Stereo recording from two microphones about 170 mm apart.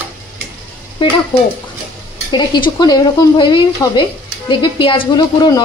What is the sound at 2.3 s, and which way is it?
Speech, 25° left (ahead or behind).